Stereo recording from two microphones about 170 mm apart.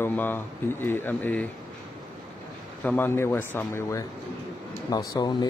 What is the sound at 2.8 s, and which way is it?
Speech, 10° left (ahead or behind).